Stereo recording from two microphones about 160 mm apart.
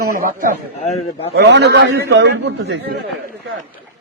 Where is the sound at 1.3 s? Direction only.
90° right.